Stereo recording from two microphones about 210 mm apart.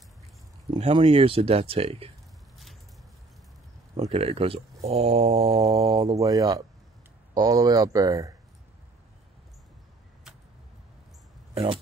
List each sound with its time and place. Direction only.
0.7 s speech: 25° right (ahead or behind)
3.9 s speech: 30° right (ahead or behind)
5.7 s speech: 45° right (ahead or behind)
5.9 s speech: 15° right (ahead or behind)
11.5 s speech: 25° right (ahead or behind)